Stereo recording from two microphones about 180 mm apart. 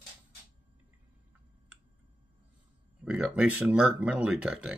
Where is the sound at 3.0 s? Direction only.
5° right (ahead or behind).